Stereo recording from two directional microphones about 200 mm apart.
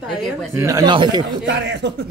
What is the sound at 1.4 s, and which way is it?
Speech, 60° right (ahead or behind).